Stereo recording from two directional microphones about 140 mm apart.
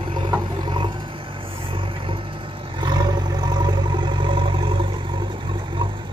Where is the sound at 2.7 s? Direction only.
30° right (ahead or behind).